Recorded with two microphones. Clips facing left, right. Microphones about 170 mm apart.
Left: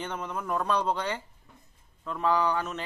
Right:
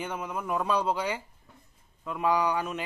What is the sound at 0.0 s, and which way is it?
Speech, 10° right (ahead or behind).